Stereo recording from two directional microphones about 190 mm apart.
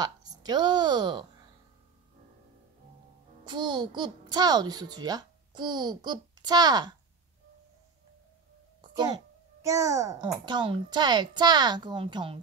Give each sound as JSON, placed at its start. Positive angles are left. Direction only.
{"t": 0.0, "sound": "a woman's voice", "side_deg": -20}
{"t": 3.4, "sound": "a child's voice", "side_deg": -25}
{"t": 9.6, "sound": "a child's voice", "side_deg": -15}